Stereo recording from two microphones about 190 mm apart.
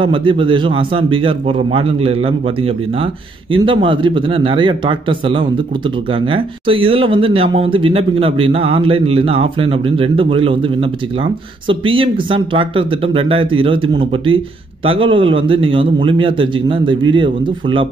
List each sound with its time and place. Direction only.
0.0 s speech: 25° right (ahead or behind)